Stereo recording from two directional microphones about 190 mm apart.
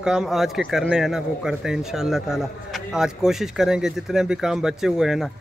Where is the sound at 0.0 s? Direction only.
5° right (ahead or behind).